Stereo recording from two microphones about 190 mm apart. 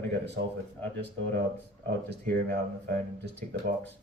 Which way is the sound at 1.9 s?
65° right (ahead or behind).